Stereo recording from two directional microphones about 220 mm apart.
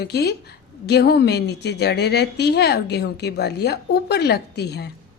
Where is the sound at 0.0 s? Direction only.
45° left (ahead or behind).